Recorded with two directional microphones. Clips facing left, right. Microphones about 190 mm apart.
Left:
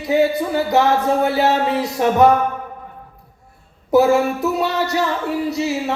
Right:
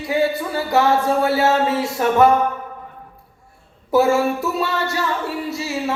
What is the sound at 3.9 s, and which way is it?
A man's voice, 20° left (ahead or behind).